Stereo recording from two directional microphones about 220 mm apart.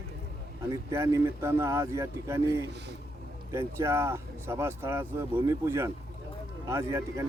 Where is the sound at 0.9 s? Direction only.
10° right (ahead or behind).